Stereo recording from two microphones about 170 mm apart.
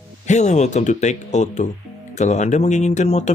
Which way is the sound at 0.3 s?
45° left (ahead or behind).